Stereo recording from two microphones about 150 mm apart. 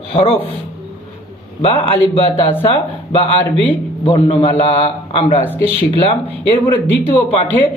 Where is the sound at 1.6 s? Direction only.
35° left (ahead or behind).